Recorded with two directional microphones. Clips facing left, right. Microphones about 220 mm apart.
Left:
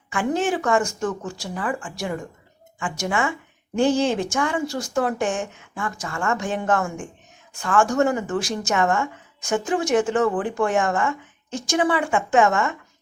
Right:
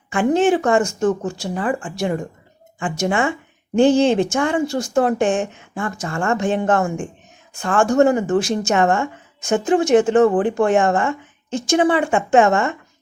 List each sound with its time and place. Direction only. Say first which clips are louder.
0.1 s speech: right 7 dB; 25° right (ahead or behind)